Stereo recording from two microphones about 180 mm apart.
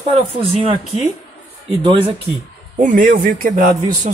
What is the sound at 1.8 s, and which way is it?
Speech, 25° right (ahead or behind).